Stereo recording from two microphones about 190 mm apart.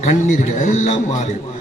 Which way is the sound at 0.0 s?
40° left (ahead or behind).